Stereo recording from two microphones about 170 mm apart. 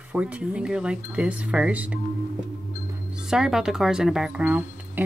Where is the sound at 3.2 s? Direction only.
5° right (ahead or behind).